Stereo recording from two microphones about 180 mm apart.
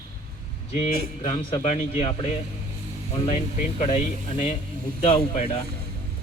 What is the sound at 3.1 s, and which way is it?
A man's voice, 35° left (ahead or behind).